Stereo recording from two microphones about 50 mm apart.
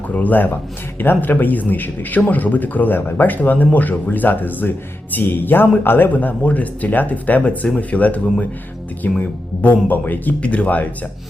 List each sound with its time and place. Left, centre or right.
0.1 s a man's voice: left